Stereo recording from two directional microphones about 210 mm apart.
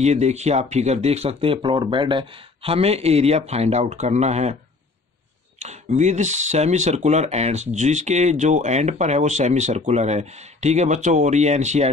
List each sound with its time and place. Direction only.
0.0 s speech: 30° right (ahead or behind)
5.6 s speech: 35° right (ahead or behind)